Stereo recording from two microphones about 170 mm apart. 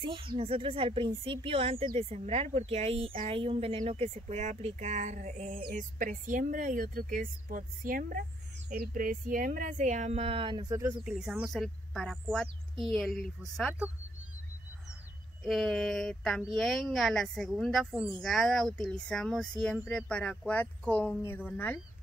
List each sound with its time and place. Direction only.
0.0 s a woman's voice: 30° right (ahead or behind)
11.1 s speech: 5° right (ahead or behind)
15.4 s speech: centre (ahead or behind)